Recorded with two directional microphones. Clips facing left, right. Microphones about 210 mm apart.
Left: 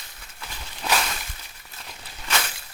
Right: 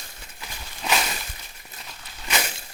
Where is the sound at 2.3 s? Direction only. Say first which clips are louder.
Right 1 dB; 20° right (ahead or behind).